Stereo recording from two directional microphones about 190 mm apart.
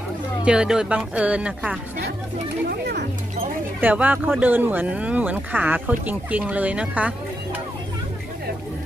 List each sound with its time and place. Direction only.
0.5 s speech: 5° right (ahead or behind)
2.7 s speech: 55° right (ahead or behind)
3.8 s speech: 10° right (ahead or behind)